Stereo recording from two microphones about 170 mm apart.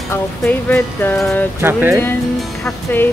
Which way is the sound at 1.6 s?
15° right (ahead or behind).